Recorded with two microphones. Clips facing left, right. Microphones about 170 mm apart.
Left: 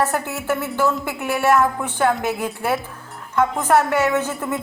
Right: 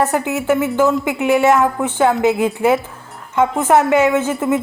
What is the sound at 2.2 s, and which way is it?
Speech, 90° right.